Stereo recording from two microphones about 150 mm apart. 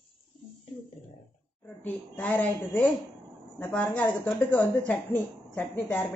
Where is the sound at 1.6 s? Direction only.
10° left (ahead or behind).